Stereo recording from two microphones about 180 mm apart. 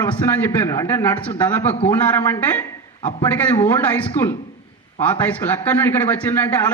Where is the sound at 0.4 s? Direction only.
15° left (ahead or behind).